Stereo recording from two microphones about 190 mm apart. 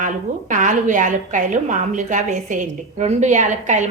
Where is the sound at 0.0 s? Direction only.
40° right (ahead or behind).